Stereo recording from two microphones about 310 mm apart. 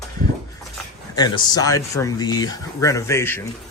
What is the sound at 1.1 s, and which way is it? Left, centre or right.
Speech, centre.